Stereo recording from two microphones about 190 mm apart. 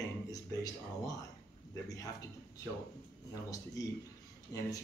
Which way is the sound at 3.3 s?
20° left (ahead or behind).